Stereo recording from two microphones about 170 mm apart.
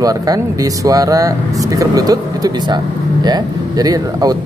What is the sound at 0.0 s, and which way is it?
Speech, 20° right (ahead or behind).